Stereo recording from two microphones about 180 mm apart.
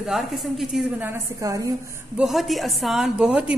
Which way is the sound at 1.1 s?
15° right (ahead or behind).